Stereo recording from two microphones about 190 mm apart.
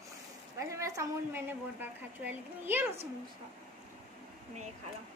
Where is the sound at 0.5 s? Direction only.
15° right (ahead or behind).